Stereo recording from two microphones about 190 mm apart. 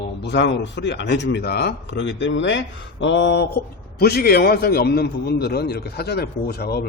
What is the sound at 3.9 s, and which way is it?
A man's voice, 55° left (ahead or behind).